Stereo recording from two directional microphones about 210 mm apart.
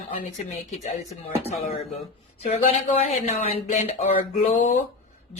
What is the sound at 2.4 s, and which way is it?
Speech, 30° left (ahead or behind).